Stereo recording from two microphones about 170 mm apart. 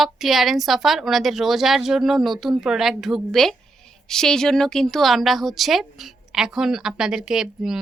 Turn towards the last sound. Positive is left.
turn(degrees=-5)  # may be behind; listen again after turning